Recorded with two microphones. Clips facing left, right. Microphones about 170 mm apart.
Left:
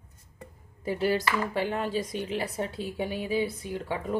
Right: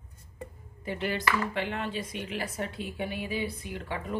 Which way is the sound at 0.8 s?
40° left (ahead or behind).